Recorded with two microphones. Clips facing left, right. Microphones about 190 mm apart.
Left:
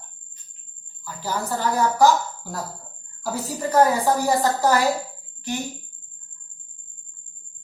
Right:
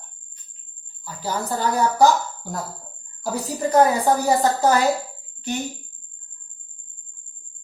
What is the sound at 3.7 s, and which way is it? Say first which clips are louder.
A woman's voice: right 1 dB; 20° right (ahead or behind).